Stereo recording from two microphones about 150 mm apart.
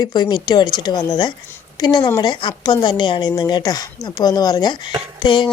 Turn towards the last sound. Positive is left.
turn(degrees=30)  # may be behind; listen again after turning